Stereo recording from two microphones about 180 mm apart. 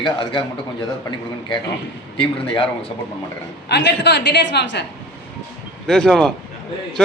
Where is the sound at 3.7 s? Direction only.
65° left (ahead or behind).